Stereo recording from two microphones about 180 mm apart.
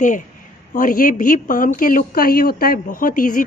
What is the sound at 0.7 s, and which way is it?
A woman's voice, 50° left (ahead or behind).